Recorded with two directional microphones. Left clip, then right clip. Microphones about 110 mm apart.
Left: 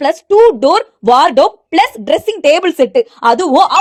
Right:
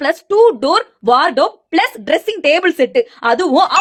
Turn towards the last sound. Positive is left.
turn(degrees=45)  # may be behind; listen again after turning